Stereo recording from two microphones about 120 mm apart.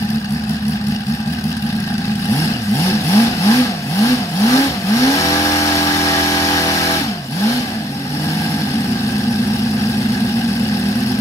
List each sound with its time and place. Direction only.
2.8 s vehicle: 25° left (ahead or behind)